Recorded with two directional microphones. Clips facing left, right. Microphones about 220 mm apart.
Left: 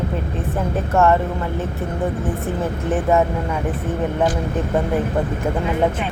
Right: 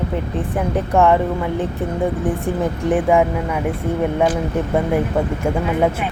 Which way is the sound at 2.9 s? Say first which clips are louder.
Right 2 dB; 15° right (ahead or behind).